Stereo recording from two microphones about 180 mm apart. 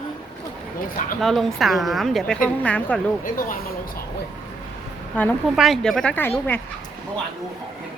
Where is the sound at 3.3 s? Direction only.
50° left (ahead or behind).